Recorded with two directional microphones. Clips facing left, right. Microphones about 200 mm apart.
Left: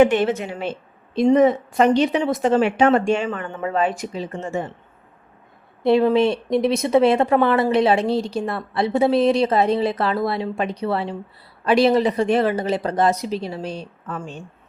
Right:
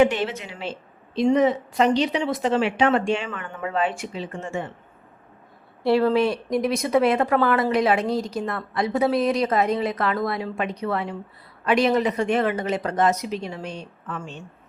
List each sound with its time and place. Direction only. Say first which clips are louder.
0.0 s a woman's voice: left 4 dB; 50° left (ahead or behind)
5.8 s a woman's voice: left 3 dB; 20° left (ahead or behind); by 14.3 s 35° left (ahead or behind)